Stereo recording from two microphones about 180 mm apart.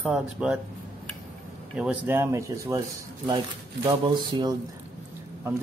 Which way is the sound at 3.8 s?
25° right (ahead or behind).